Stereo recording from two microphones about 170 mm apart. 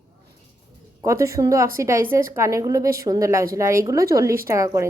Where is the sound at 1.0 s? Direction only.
20° right (ahead or behind).